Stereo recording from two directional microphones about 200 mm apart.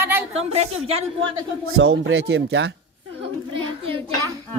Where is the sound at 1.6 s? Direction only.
75° right (ahead or behind).